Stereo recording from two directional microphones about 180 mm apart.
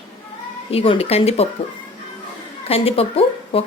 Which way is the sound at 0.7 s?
30° left (ahead or behind).